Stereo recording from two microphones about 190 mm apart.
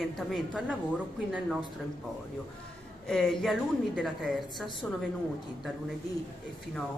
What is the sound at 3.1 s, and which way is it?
A woman's voice, centre (ahead or behind).